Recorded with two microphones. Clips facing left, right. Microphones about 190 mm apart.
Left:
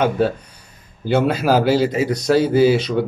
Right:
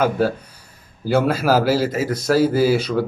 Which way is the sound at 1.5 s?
5° right (ahead or behind).